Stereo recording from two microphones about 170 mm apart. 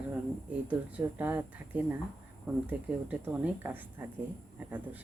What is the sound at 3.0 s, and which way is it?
Speech, 10° right (ahead or behind).